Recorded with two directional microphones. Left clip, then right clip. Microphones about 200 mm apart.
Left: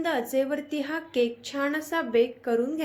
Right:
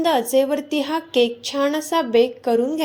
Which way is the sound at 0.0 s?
25° right (ahead or behind).